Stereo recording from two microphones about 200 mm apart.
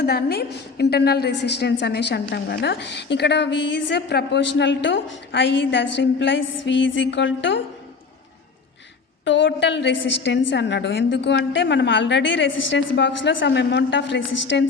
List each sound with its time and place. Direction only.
0.0 s a woman's voice: 50° left (ahead or behind)
9.2 s a woman's voice: 65° left (ahead or behind)